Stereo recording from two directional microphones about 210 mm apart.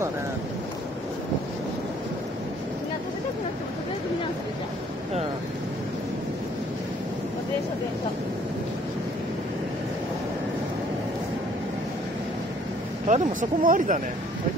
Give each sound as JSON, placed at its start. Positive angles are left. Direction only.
{"t": 13.1, "sound": "speech", "side_deg": -40}